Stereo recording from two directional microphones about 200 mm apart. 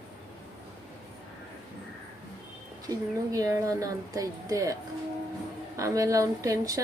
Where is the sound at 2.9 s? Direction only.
15° right (ahead or behind).